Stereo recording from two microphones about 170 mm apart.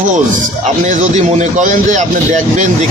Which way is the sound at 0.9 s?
45° right (ahead or behind).